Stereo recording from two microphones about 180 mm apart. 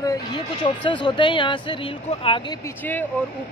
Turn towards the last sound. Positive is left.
turn(degrees=10)  # may be behind; listen again after turning